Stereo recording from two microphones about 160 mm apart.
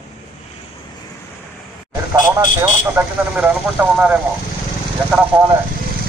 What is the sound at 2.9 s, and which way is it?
Speech, 10° right (ahead or behind).